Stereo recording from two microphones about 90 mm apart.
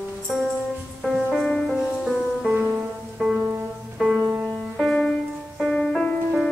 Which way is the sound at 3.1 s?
5° right (ahead or behind).